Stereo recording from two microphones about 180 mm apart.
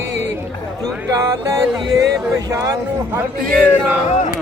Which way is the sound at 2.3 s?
15° right (ahead or behind).